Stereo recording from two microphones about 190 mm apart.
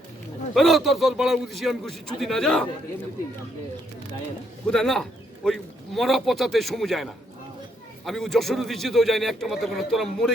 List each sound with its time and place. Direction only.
0.5 s a man's voice: centre (ahead or behind)
4.6 s a man's voice: 5° left (ahead or behind)